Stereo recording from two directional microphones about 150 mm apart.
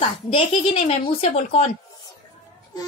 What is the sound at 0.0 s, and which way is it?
Speech, 40° left (ahead or behind).